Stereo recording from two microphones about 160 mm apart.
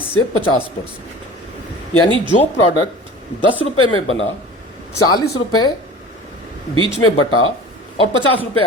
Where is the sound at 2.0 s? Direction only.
30° right (ahead or behind).